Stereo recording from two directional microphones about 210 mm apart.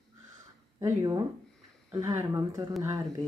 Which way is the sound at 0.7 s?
15° right (ahead or behind).